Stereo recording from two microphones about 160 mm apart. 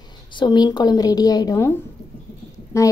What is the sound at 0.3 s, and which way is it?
A woman's voice, 30° left (ahead or behind).